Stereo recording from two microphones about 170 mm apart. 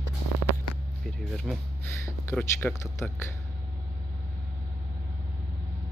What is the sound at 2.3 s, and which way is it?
Speech, 10° left (ahead or behind).